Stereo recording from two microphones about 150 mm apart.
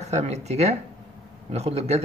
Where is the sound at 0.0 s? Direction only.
45° right (ahead or behind).